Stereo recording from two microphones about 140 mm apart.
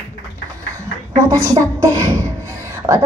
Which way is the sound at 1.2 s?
25° right (ahead or behind).